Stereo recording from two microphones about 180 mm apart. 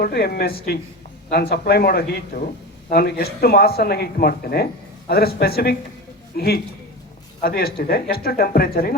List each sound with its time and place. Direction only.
0.0 s speech: 60° left (ahead or behind)